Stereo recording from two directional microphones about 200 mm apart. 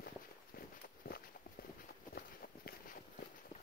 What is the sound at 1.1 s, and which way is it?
Walk, 45° left (ahead or behind).